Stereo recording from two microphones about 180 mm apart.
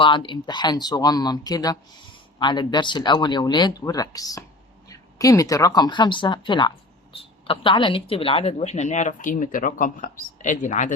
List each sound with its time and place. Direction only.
0.0 s speech: 25° left (ahead or behind); by 10.9 s 45° left (ahead or behind)